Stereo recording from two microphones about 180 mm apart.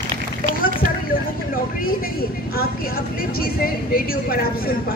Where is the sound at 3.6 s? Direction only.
55° left (ahead or behind).